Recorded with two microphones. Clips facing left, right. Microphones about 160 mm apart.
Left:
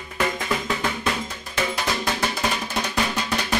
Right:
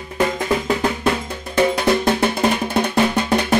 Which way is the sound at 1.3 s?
55° right (ahead or behind).